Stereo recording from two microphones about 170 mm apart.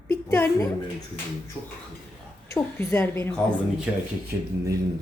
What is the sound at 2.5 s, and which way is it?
Speech, 15° left (ahead or behind).